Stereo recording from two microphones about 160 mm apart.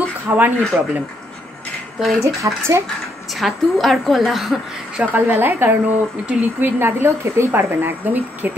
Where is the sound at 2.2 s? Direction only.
20° right (ahead or behind).